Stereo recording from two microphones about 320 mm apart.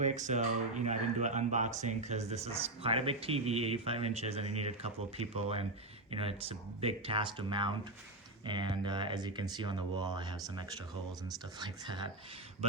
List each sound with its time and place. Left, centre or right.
0.0 s speech: right